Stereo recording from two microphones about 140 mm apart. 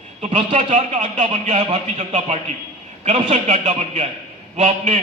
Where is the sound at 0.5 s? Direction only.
60° right (ahead or behind).